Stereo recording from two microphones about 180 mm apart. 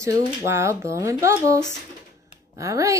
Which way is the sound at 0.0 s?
20° right (ahead or behind).